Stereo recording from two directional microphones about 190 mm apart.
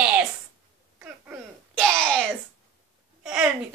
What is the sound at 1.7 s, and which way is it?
Speech, 5° left (ahead or behind).